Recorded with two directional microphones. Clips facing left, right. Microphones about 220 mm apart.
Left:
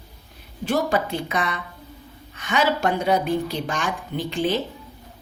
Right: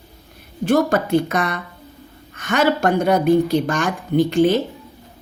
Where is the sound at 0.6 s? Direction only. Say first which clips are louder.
Right 5 dB; 50° right (ahead or behind).